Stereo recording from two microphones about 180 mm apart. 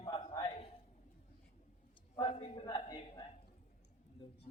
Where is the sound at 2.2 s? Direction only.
25° left (ahead or behind).